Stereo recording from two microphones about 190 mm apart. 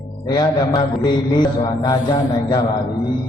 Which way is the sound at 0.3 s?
20° left (ahead or behind).